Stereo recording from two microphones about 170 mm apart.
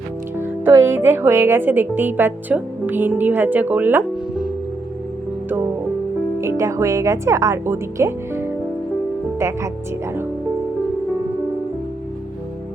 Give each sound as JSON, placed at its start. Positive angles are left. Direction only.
{"t": 0.3, "sound": "a woman's voice", "side_deg": -15}
{"t": 6.4, "sound": "a woman's voice", "side_deg": -15}